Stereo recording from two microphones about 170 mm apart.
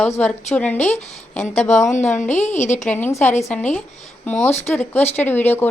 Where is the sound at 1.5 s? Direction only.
45° left (ahead or behind).